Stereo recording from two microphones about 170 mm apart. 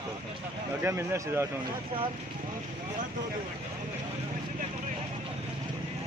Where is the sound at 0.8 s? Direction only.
15° right (ahead or behind).